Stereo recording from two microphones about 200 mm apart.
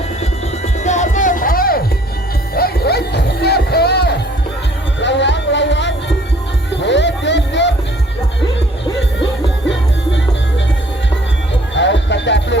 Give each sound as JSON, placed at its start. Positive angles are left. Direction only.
{"t": 0.9, "sound": "music", "side_deg": 35}
{"t": 11.7, "sound": "music", "side_deg": 60}